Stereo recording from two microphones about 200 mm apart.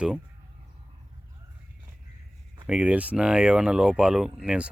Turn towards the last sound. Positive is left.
turn(degrees=-5)  # may be behind; listen again after turning